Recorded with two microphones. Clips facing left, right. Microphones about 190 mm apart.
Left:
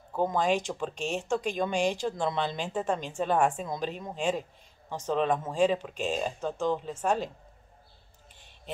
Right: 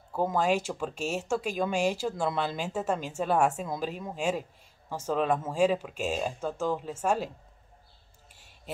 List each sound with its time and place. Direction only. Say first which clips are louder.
0.1 s speech: even; 5° right (ahead or behind)
8.7 s speech: even; 5° right (ahead or behind)